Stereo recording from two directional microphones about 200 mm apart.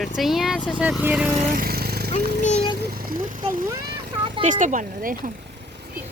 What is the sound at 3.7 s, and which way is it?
Vehicle, 50° right (ahead or behind).